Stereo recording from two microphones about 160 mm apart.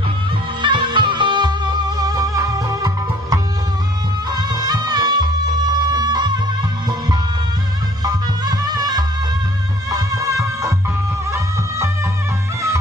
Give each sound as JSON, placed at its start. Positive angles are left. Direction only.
{"t": 0.6, "sound": "music", "side_deg": -30}
{"t": 8.0, "sound": "music", "side_deg": -25}